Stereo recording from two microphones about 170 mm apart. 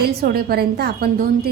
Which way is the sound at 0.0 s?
70° right (ahead or behind).